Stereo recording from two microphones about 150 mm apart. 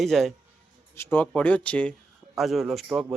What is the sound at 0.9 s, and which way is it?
A man's voice, 15° left (ahead or behind).